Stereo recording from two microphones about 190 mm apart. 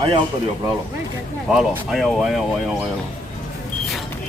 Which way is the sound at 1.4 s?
5° right (ahead or behind).